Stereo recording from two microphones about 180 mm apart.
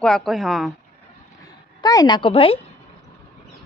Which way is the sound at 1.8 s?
20° left (ahead or behind).